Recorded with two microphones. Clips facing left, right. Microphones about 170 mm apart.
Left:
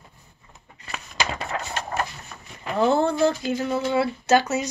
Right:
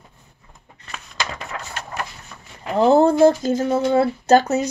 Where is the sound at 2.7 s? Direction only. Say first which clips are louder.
Right 6 dB; 35° right (ahead or behind).